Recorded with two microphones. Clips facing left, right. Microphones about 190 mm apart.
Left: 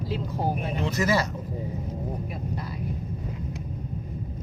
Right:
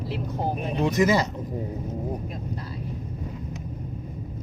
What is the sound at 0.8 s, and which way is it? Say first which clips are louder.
Speech: right 4 dB; 20° right (ahead or behind).